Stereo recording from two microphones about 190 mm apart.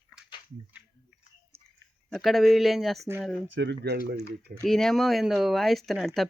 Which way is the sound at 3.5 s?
70° right (ahead or behind).